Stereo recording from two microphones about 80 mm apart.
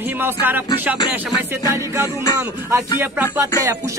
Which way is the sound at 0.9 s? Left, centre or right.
Left.